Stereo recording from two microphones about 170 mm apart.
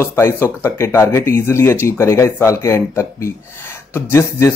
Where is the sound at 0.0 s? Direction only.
15° left (ahead or behind).